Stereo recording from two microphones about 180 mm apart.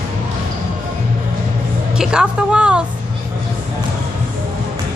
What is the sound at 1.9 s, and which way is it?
Music, 5° right (ahead or behind).